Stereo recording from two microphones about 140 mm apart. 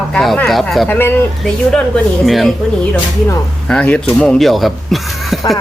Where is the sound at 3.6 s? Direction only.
5° left (ahead or behind).